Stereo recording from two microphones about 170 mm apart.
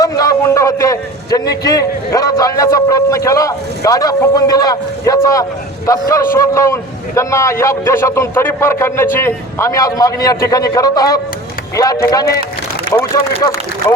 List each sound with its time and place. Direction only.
0.0 s a man's voice: 20° left (ahead or behind)